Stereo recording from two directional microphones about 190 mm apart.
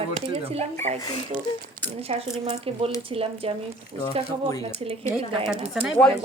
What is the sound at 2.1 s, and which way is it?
Speech, 35° right (ahead or behind).